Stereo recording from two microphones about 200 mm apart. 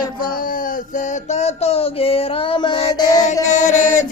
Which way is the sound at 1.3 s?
30° left (ahead or behind).